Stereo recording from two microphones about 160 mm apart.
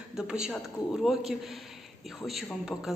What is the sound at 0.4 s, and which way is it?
A woman's voice, centre (ahead or behind).